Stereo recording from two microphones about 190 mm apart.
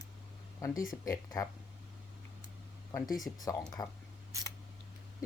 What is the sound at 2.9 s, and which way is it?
Speech, 20° left (ahead or behind).